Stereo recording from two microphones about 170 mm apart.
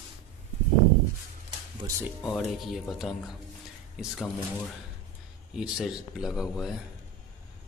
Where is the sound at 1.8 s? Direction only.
25° right (ahead or behind).